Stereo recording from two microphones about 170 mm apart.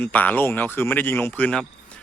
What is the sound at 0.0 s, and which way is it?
A man's voice, 10° left (ahead or behind).